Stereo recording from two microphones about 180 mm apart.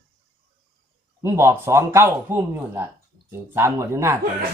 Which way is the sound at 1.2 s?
15° right (ahead or behind).